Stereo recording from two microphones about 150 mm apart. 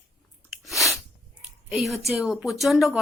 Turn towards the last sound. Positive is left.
turn(degrees=0)  # may be behind; listen again after turning